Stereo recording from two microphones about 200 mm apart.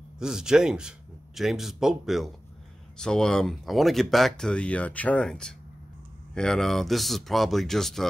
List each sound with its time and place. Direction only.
0.2 s speech: 5° right (ahead or behind)